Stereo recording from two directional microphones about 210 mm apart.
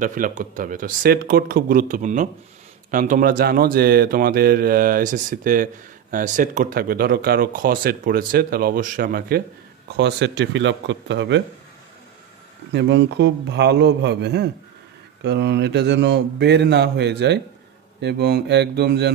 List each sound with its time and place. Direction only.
0.0 s speech: 40° right (ahead or behind)
9.9 s a man's voice: 55° right (ahead or behind)
12.7 s a man's voice: 55° right (ahead or behind)